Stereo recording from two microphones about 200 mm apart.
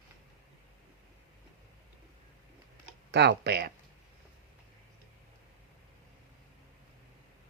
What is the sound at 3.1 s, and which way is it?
Speech, 55° right (ahead or behind).